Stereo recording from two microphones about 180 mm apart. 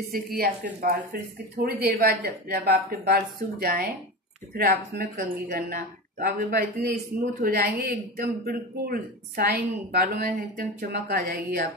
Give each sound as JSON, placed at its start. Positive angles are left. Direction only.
{"t": 0.1, "sound": "speech", "side_deg": -55}